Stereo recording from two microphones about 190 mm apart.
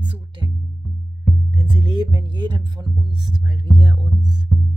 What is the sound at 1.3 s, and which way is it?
Speech, 20° right (ahead or behind).